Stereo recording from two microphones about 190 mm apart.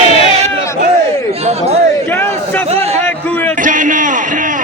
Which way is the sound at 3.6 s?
45° right (ahead or behind).